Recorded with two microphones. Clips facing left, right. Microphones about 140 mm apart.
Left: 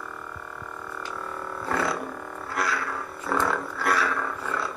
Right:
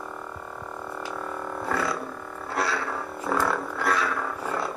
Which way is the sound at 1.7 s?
20° left (ahead or behind).